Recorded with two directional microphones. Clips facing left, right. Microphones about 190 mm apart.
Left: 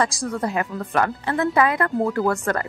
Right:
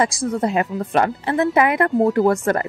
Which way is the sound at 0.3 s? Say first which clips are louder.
Right 4 dB; 20° right (ahead or behind).